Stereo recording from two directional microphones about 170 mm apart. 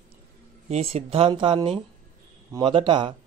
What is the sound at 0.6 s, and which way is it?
A man's voice, 40° right (ahead or behind).